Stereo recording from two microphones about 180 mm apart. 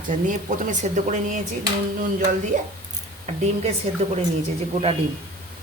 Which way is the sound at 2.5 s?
40° right (ahead or behind).